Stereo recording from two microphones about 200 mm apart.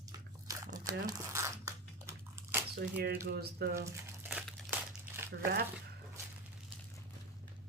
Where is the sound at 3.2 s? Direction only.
55° right (ahead or behind).